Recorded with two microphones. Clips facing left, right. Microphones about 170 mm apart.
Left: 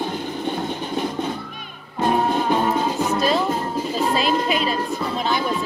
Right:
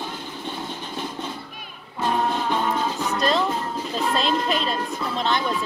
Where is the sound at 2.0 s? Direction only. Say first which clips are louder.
Left 4 dB; 50° left (ahead or behind).